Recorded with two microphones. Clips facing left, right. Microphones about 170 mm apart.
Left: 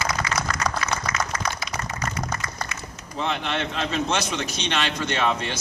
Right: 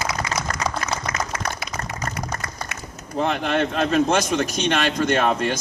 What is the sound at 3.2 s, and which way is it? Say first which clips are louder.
Speech: right 5 dB; 50° right (ahead or behind).